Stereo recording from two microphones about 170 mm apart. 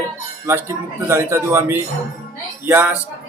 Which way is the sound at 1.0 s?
15° right (ahead or behind).